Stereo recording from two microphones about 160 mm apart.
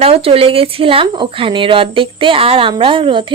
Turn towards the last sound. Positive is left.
turn(degrees=-30)  # may be behind; listen again after turning